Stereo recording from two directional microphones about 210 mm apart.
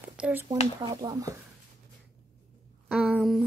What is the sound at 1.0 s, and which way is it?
Speech, 15° right (ahead or behind).